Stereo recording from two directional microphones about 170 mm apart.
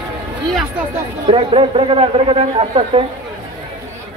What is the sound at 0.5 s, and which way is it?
Speech, centre (ahead or behind).